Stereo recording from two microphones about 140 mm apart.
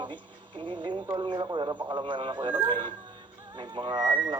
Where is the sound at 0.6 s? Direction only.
35° right (ahead or behind).